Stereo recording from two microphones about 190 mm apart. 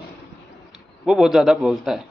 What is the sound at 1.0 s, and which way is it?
Speech, centre (ahead or behind).